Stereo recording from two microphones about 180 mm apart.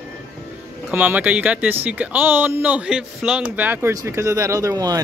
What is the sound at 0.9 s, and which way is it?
Speech, 10° right (ahead or behind).